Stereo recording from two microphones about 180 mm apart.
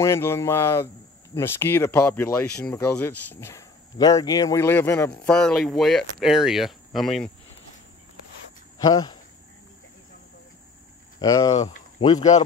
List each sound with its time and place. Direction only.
0.0 s speech: 15° left (ahead or behind)
8.8 s speech: 25° left (ahead or behind)
11.1 s speech: 20° left (ahead or behind)
12.2 s speech: 40° left (ahead or behind)